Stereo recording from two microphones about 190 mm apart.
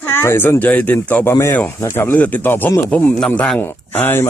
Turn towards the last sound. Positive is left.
turn(degrees=10)  # may be behind; listen again after turning